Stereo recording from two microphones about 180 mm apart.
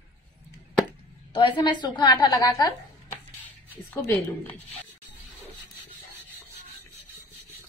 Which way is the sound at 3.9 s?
10° left (ahead or behind).